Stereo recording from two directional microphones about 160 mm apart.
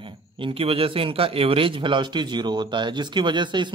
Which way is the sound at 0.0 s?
35° right (ahead or behind).